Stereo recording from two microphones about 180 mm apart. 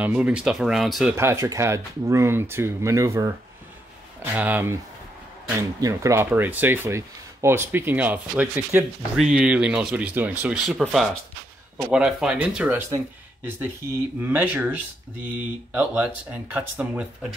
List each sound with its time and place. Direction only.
0.0 s speech: 5° right (ahead or behind)
1.1 s speech: 15° right (ahead or behind)
14.2 s speech: 10° right (ahead or behind)